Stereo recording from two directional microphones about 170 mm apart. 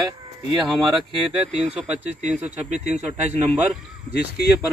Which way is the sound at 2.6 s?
45° right (ahead or behind).